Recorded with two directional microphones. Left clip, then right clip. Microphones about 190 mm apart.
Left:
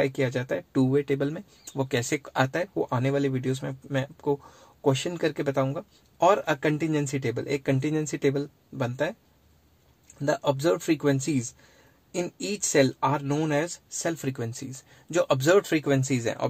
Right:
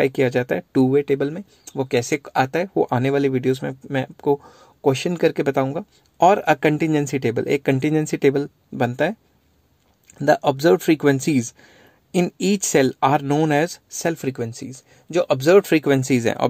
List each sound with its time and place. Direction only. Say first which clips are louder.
0.0 s speech: right 8 dB; 40° right (ahead or behind)
10.1 s speech: right 8 dB; 40° right (ahead or behind)